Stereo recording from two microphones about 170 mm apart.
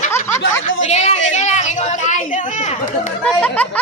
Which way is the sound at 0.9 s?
40° left (ahead or behind).